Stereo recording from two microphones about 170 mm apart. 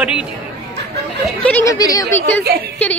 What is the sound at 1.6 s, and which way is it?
Speech, 20° left (ahead or behind).